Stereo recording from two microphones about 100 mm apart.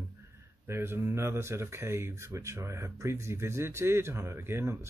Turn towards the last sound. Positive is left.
turn(degrees=-25)  # may be behind; listen again after turning